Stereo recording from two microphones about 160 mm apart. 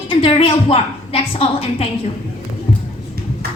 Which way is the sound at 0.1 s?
35° left (ahead or behind).